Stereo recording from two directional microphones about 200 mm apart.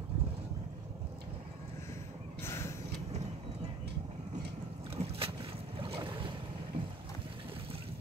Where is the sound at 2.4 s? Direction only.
15° left (ahead or behind).